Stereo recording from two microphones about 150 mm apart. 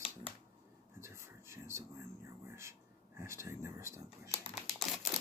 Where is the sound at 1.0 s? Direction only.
20° right (ahead or behind).